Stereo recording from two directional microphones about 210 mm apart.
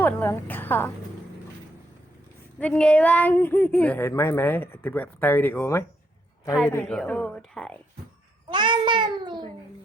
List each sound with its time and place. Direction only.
0.0 s a woman's voice: 10° left (ahead or behind)
2.6 s a woman's voice: 5° left (ahead or behind)
8.4 s a child's voice: 20° right (ahead or behind)